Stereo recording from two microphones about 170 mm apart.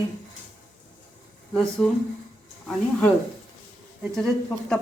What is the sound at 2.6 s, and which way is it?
Speech, 10° left (ahead or behind).